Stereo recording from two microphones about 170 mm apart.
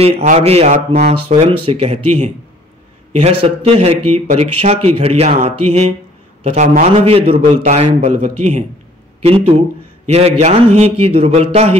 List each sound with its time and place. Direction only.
0.0 s speech: 40° right (ahead or behind)